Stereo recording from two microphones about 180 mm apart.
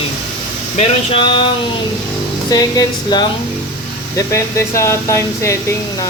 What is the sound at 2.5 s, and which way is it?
Speech, 20° left (ahead or behind).